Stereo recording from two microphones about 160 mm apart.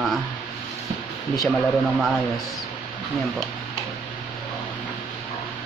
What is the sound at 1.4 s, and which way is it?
Speech, centre (ahead or behind).